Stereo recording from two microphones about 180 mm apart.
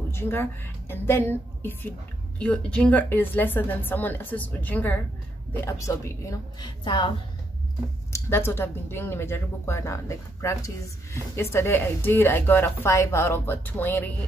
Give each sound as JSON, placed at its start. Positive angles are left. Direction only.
{"t": 0.1, "sound": "a woman's voice", "side_deg": 15}
{"t": 8.1, "sound": "a woman's voice", "side_deg": 15}